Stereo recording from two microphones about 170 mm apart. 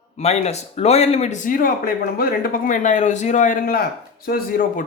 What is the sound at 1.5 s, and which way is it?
Speech, 55° left (ahead or behind).